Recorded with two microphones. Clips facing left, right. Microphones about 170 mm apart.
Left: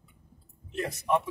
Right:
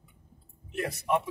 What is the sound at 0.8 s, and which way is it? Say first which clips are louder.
Speech: left 1 dB; 15° right (ahead or behind).